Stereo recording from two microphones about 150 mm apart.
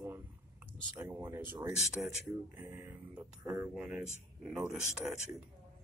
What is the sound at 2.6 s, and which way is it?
Speech, 15° right (ahead or behind).